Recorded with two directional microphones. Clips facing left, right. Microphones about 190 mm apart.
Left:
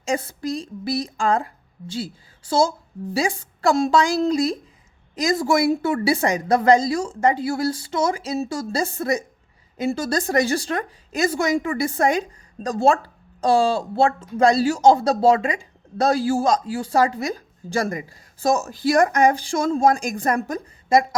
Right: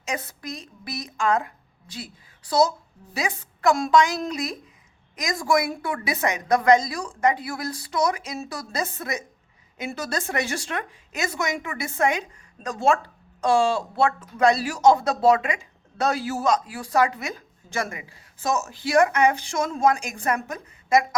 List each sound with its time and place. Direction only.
0.0 s a woman's voice: 30° left (ahead or behind)